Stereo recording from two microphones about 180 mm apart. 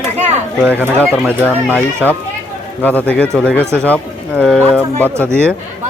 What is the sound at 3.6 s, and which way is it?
Speech, 15° right (ahead or behind).